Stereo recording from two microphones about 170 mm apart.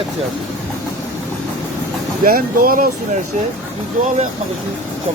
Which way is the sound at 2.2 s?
60° right (ahead or behind).